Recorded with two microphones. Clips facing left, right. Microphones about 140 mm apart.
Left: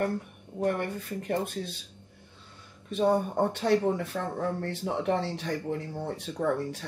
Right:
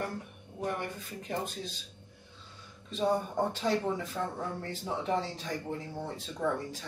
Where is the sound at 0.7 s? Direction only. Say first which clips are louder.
Left 6 dB; 60° left (ahead or behind).